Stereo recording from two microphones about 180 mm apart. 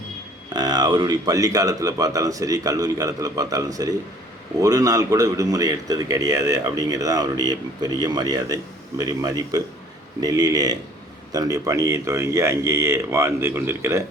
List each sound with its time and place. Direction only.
0.5 s speech: 25° right (ahead or behind)